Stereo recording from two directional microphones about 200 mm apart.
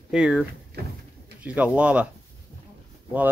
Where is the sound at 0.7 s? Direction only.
55° right (ahead or behind).